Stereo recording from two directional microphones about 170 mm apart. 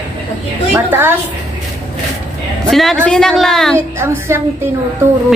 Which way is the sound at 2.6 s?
Centre (ahead or behind).